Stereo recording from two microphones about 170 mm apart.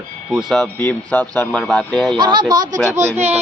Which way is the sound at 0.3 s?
Centre (ahead or behind).